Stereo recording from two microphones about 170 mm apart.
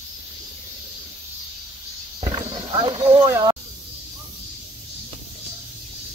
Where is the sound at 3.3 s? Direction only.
20° right (ahead or behind).